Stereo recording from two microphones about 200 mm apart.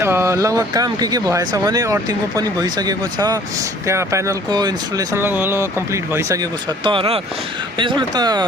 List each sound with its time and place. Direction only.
0.0 s speech: 15° right (ahead or behind)
6.8 s speech: 25° right (ahead or behind)